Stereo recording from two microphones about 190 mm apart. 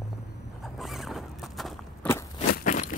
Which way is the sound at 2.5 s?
45° left (ahead or behind).